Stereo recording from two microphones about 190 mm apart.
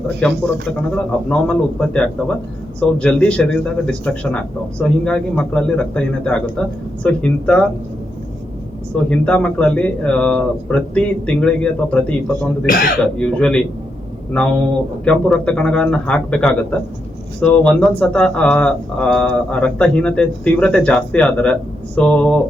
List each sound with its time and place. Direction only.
0.2 s speech: 5° left (ahead or behind)
9.0 s speech: 5° left (ahead or behind)
12.6 s speech: 50° left (ahead or behind)
13.1 s speech: 5° left (ahead or behind)
15.0 s speech: 5° left (ahead or behind)